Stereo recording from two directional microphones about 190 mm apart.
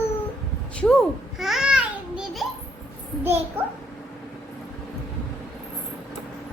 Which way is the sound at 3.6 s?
10° right (ahead or behind).